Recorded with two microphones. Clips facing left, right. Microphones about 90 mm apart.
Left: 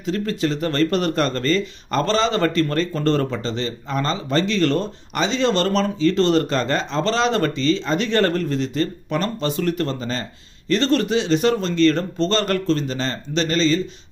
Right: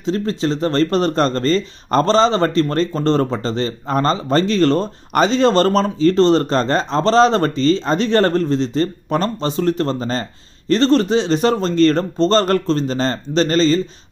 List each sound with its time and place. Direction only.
0.0 s speech: 30° right (ahead or behind)